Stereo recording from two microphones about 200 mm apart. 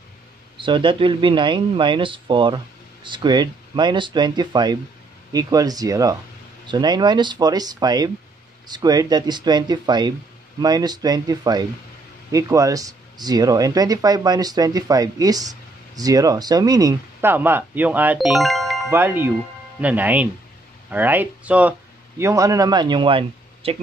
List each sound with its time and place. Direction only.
0.6 s speech: 25° right (ahead or behind); by 18.8 s centre (ahead or behind)
18.9 s speech: 10° right (ahead or behind); by 23.8 s 25° right (ahead or behind)